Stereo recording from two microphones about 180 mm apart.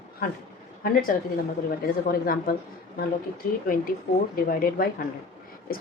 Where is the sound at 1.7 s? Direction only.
55° left (ahead or behind).